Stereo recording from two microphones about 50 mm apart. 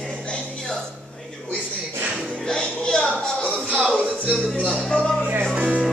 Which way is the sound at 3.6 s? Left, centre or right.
Right.